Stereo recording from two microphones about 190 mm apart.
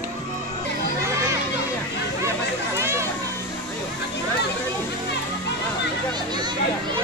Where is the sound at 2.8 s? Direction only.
15° right (ahead or behind).